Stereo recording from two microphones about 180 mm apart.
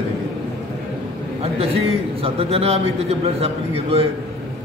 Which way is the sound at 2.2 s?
35° right (ahead or behind).